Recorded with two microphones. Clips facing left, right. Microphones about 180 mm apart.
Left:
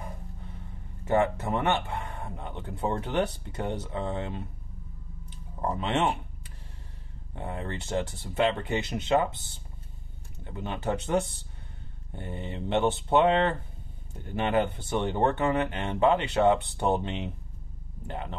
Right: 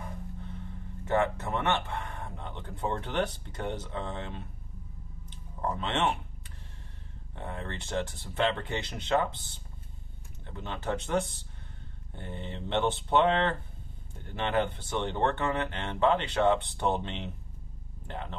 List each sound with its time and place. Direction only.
1.0 s speech: 15° left (ahead or behind)
5.3 s a sound: 15° left (ahead or behind)
7.3 s speech: 15° left (ahead or behind)
10.4 s speech: 10° left (ahead or behind)
12.1 s speech: 10° left (ahead or behind)